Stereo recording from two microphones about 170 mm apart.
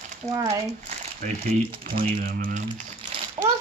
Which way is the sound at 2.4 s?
55° right (ahead or behind).